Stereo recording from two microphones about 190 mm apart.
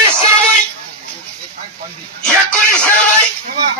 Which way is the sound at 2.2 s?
5° left (ahead or behind).